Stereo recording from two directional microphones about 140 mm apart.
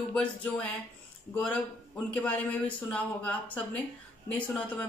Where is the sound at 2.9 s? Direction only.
10° left (ahead or behind).